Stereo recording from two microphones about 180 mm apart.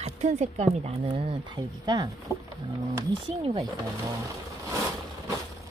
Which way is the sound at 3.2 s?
30° right (ahead or behind).